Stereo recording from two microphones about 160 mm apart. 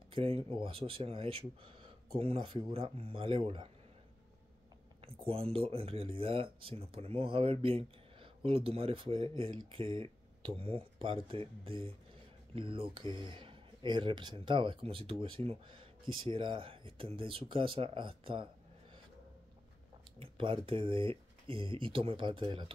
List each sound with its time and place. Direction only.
0.1 s speech: 35° right (ahead or behind)
5.0 s speech: 35° right (ahead or behind)
20.2 s speech: 35° right (ahead or behind)